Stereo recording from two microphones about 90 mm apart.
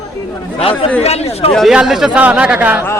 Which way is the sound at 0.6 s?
90° left.